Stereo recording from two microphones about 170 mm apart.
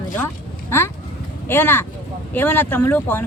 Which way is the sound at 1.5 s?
15° left (ahead or behind).